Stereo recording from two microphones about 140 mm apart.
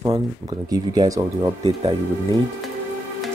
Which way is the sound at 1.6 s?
35° right (ahead or behind).